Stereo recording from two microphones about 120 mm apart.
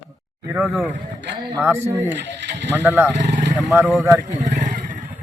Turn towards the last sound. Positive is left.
turn(degrees=-85)